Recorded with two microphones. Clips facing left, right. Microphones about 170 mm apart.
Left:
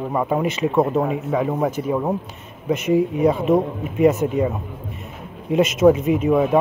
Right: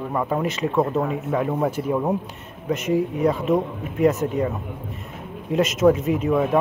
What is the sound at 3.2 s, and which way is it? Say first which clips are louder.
Speech: left 3 dB; 20° left (ahead or behind).